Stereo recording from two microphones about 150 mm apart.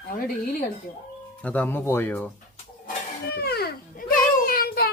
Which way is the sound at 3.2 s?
90° left.